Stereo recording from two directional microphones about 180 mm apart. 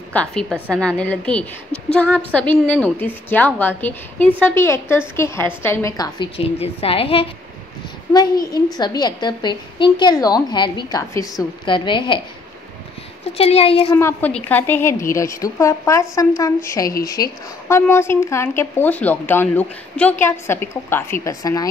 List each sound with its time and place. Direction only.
0.1 s speech: 5° left (ahead or behind); by 6.2 s 20° left (ahead or behind)
6.3 s a woman's voice: 30° left (ahead or behind)
13.4 s a woman's voice: 35° left (ahead or behind)
13.9 s speech: 10° left (ahead or behind)